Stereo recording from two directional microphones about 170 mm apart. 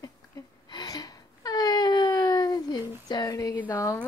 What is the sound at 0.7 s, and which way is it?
Whimper, 25° left (ahead or behind).